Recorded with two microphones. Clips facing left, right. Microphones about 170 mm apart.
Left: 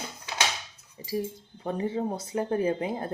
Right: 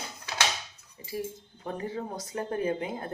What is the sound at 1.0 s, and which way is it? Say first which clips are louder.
Speech: left 4 dB; 25° left (ahead or behind).